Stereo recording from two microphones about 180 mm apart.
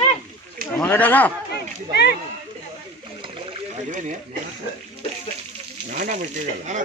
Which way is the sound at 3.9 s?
45° right (ahead or behind).